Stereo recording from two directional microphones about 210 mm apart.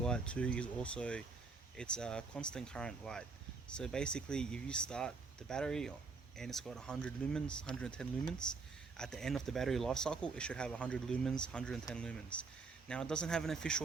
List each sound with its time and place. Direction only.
0.0 s speech: 5° left (ahead or behind)